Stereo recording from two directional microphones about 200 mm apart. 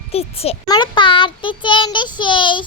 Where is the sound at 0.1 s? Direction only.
30° left (ahead or behind).